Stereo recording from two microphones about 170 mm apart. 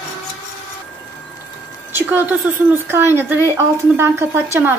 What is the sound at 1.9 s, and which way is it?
A woman's voice, 10° right (ahead or behind).